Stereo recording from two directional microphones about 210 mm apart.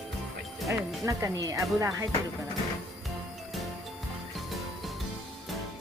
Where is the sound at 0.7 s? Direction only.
15° right (ahead or behind).